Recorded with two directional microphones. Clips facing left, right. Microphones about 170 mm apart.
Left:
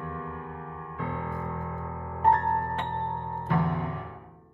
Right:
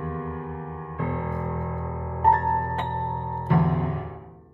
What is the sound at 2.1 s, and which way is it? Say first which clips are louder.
Music: right 2 dB; 35° right (ahead or behind).